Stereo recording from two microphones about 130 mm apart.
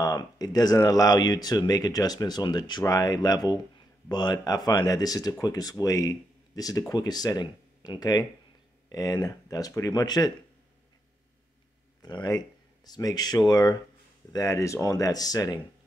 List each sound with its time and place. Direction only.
0.0 s speech: 30° left (ahead or behind)
12.0 s speech: 35° left (ahead or behind)